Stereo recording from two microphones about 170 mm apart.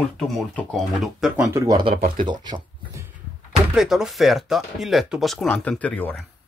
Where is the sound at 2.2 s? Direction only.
25° right (ahead or behind).